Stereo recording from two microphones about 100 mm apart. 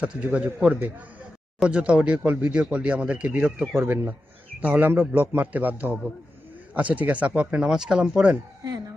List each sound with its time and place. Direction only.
0.0 s speech: 10° right (ahead or behind)